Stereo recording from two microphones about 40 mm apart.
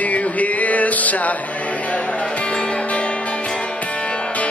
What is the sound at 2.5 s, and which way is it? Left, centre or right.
Music, left.